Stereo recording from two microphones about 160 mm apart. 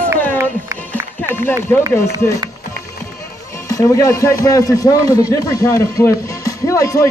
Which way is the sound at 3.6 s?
20° left (ahead or behind).